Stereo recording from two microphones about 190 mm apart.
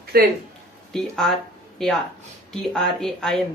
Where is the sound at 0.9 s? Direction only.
5° left (ahead or behind).